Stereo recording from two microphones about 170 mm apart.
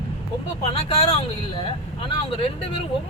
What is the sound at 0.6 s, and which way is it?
Speech, 35° left (ahead or behind).